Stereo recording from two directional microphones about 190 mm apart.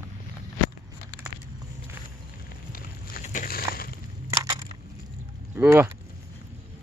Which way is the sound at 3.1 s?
45° left (ahead or behind).